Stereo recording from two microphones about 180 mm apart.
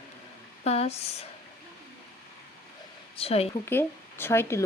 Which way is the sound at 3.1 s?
35° left (ahead or behind).